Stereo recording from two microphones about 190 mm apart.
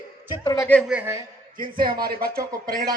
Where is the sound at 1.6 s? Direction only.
50° right (ahead or behind).